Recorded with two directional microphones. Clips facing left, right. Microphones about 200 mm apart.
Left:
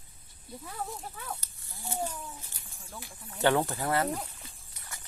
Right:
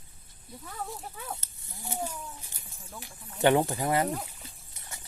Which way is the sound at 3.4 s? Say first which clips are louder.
Right 3 dB; 15° right (ahead or behind).